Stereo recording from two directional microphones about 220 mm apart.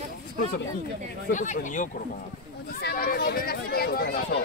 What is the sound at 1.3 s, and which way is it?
Speech, 35° left (ahead or behind).